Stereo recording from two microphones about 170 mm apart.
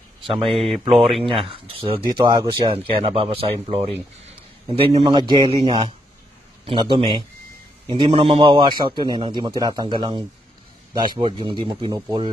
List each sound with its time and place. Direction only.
0.4 s speech: centre (ahead or behind)
1.4 s a man's voice: 35° right (ahead or behind)